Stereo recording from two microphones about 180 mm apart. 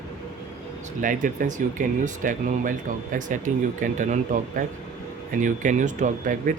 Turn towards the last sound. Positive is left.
turn(degrees=-45)  # may be behind; listen again after turning